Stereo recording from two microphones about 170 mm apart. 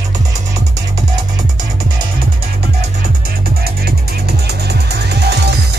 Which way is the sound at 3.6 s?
65° right (ahead or behind).